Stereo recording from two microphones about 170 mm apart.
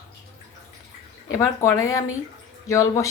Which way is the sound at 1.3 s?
20° left (ahead or behind).